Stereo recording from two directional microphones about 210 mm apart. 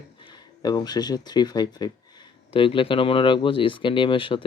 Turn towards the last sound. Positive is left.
turn(degrees=25)  # may be behind; listen again after turning